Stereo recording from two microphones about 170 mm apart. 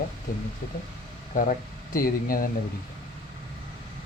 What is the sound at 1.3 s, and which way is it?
Speech, 50° left (ahead or behind).